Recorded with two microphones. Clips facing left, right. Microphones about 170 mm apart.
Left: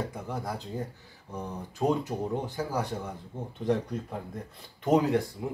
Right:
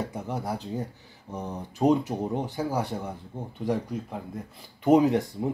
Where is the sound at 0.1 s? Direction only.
15° right (ahead or behind).